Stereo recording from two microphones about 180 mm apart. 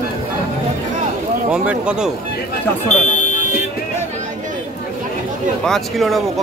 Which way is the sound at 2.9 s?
40° left (ahead or behind).